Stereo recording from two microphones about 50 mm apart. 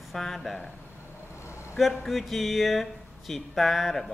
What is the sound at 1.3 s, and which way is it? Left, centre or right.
Vehicle, left.